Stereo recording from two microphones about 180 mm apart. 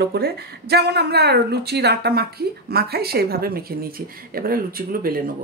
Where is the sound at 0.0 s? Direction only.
60° right (ahead or behind).